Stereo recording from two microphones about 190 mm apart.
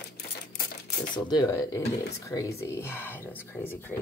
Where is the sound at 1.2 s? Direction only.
20° left (ahead or behind).